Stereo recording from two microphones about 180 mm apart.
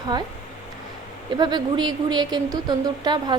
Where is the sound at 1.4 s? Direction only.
25° right (ahead or behind).